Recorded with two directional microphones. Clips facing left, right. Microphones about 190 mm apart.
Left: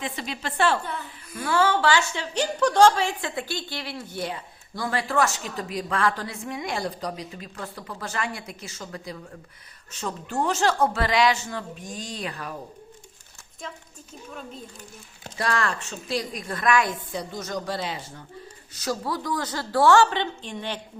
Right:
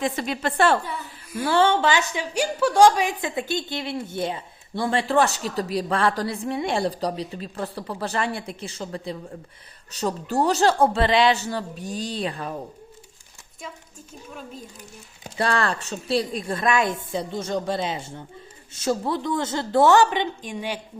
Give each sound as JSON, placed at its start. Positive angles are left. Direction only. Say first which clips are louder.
{"t": 0.0, "sound": "a woman's voice", "louder": "right 7 dB", "side_deg": -50}
{"t": 0.9, "sound": "a woman's voice", "louder": "right 1 dB", "side_deg": -5}
{"t": 1.4, "sound": "a woman's voice", "louder": "right 3 dB", "side_deg": -30}
{"t": 15.4, "sound": "a woman's voice", "louder": "right 3 dB", "side_deg": -30}